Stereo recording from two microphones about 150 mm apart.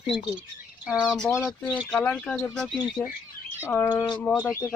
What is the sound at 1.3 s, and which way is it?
Speech, 15° left (ahead or behind).